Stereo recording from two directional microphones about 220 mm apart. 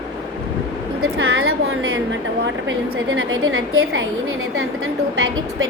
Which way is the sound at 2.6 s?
65° right (ahead or behind).